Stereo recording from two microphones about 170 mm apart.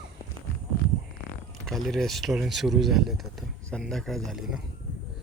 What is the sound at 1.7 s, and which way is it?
Speech, centre (ahead or behind).